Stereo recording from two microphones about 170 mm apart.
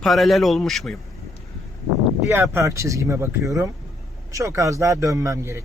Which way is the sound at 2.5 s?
15° right (ahead or behind).